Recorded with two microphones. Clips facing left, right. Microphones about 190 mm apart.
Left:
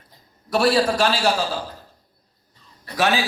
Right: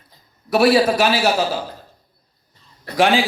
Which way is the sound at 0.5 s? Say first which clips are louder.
Right 4 dB; 10° right (ahead or behind).